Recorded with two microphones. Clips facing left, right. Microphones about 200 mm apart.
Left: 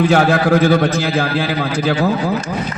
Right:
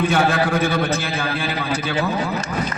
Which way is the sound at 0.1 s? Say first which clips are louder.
Left 6 dB; 70° left (ahead or behind).